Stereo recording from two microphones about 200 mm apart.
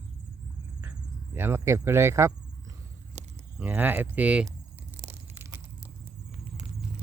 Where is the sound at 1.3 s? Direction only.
10° right (ahead or behind).